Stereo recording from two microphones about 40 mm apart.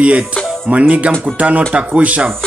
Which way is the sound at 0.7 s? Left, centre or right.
Right.